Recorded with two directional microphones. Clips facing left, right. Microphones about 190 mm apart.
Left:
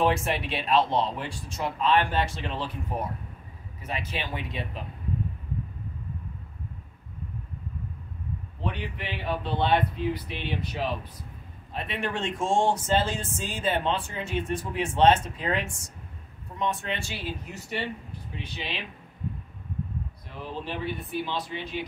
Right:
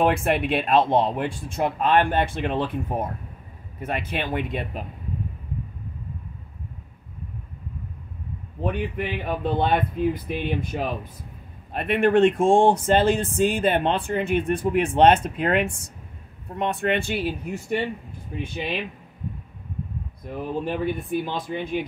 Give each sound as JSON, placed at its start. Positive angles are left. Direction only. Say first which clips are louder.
{"t": 0.0, "sound": "speech", "louder": "right 4 dB", "side_deg": -55}
{"t": 8.5, "sound": "speech", "louder": "right 8 dB", "side_deg": -50}
{"t": 18.3, "sound": "speech", "louder": "right 8 dB", "side_deg": -50}
{"t": 20.2, "sound": "speech", "louder": "right 9 dB", "side_deg": -50}